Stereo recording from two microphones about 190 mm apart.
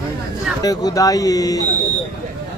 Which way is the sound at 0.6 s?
20° left (ahead or behind).